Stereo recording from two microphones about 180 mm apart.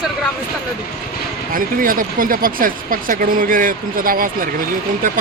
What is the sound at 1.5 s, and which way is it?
Speech, 50° right (ahead or behind).